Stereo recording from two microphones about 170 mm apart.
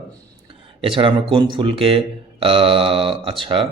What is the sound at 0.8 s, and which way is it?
Speech, 30° right (ahead or behind).